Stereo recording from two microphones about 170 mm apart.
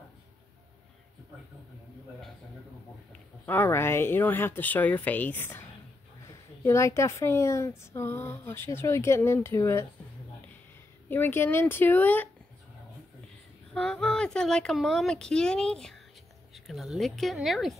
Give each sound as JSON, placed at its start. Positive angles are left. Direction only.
{"t": 3.4, "sound": "speech", "side_deg": 10}
{"t": 6.6, "sound": "speech", "side_deg": 15}
{"t": 11.1, "sound": "speech", "side_deg": 10}
{"t": 13.7, "sound": "speech", "side_deg": 5}